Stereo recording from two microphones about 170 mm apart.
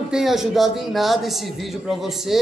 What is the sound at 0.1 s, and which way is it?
A man's voice, centre (ahead or behind).